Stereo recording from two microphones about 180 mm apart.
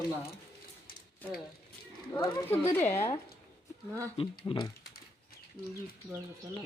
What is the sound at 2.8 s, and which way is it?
Speech, 15° left (ahead or behind).